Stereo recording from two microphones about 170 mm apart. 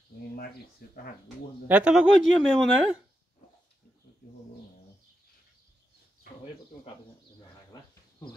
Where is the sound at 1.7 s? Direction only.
5° right (ahead or behind).